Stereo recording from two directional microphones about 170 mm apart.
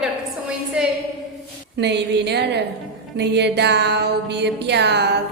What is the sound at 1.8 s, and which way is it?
Music, 85° right.